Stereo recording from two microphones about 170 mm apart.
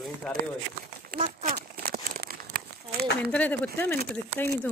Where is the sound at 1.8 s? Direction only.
60° right (ahead or behind).